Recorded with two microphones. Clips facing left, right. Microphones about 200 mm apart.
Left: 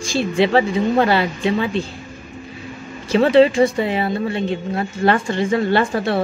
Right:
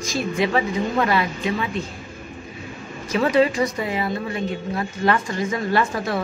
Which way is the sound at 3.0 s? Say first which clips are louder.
Left 6 dB; 30° left (ahead or behind).